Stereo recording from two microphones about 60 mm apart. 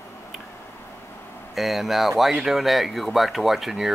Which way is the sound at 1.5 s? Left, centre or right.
Centre.